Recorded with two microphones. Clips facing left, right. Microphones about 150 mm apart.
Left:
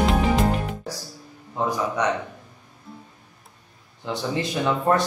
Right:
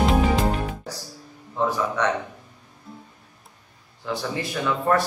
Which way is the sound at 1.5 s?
15° left (ahead or behind).